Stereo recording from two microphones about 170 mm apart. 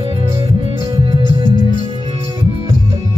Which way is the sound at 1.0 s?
30° right (ahead or behind).